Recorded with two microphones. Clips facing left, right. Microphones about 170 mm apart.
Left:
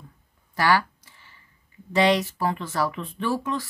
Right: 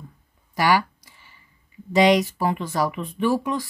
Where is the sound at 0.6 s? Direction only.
15° right (ahead or behind).